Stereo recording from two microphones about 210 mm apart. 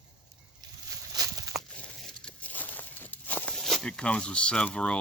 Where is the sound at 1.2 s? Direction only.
20° right (ahead or behind).